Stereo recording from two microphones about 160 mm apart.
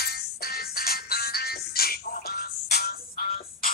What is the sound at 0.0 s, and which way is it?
Music, 80° left.